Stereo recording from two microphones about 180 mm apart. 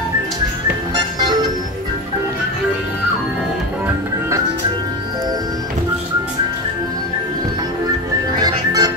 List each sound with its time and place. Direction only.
8.4 s music: 20° right (ahead or behind)